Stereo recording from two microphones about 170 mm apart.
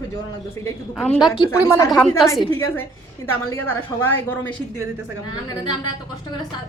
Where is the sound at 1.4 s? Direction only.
15° left (ahead or behind).